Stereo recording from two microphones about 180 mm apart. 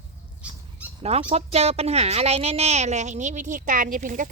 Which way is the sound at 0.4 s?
5° right (ahead or behind).